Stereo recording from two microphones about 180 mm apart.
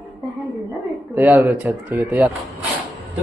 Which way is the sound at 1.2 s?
10° right (ahead or behind).